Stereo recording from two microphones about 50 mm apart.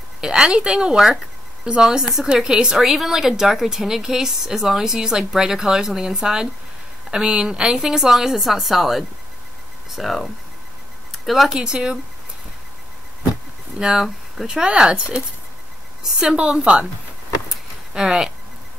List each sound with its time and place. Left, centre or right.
0.2 s a woman's voice: centre
11.1 s a sound: centre
11.5 s a woman's voice: centre
13.7 s a woman's voice: centre
17.9 s a woman's voice: centre